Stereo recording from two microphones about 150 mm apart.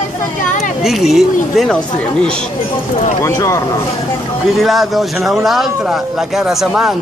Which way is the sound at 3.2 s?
20° left (ahead or behind).